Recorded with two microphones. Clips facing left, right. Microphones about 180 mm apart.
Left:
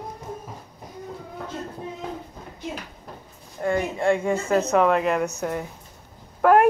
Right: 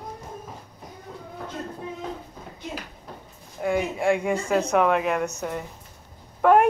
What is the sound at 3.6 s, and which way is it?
A woman's voice, 5° right (ahead or behind).